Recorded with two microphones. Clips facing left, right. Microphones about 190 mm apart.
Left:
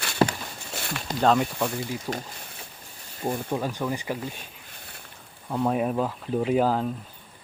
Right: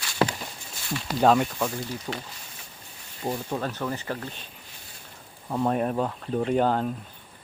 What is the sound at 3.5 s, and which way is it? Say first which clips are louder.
Speech: left 2 dB; 10° left (ahead or behind).